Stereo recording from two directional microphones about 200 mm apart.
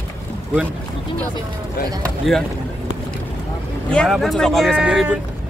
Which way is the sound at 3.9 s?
Centre (ahead or behind).